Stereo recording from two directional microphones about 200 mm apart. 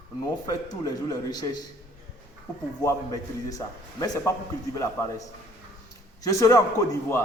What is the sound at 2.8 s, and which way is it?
A man's voice, 15° left (ahead or behind).